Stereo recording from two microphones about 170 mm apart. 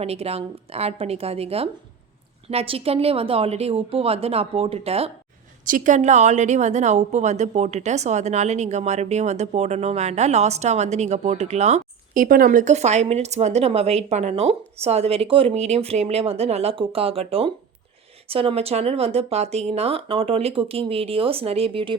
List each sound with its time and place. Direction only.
0.0 s a woman's voice: 35° right (ahead or behind)
5.6 s a woman's voice: 50° right (ahead or behind); by 21.9 s 30° right (ahead or behind)